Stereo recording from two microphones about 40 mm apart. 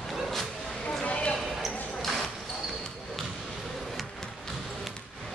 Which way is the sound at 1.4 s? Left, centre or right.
Centre.